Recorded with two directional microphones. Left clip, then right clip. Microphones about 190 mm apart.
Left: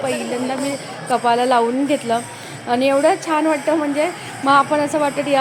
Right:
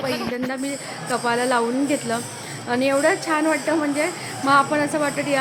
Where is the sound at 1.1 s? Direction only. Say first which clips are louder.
Left 5 dB; 15° left (ahead or behind).